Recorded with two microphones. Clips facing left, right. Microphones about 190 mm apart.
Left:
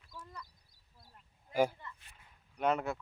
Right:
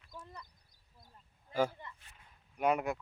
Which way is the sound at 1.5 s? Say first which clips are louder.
Left 2 dB; 15° left (ahead or behind).